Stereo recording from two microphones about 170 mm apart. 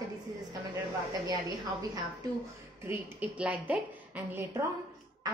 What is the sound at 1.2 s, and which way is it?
A woman's voice, 20° right (ahead or behind).